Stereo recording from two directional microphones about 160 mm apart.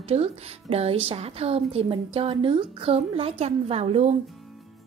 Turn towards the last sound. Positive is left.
turn(degrees=-40)  # may be behind; listen again after turning